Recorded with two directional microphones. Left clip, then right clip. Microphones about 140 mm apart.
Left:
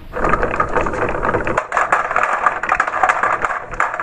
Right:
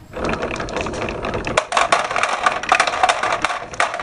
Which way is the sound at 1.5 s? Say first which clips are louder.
Right 4 dB; 90° right.